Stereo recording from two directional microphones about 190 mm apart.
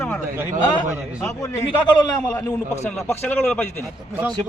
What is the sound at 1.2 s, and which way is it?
A man's voice, 10° left (ahead or behind).